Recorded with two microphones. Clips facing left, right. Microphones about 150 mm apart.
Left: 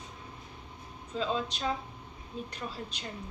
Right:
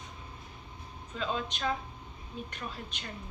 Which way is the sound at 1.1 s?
30° left (ahead or behind).